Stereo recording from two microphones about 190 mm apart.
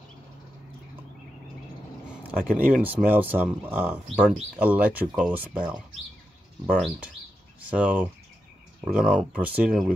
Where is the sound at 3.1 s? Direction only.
10° right (ahead or behind).